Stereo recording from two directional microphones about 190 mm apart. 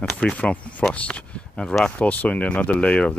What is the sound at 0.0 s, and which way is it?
Speech, 5° left (ahead or behind).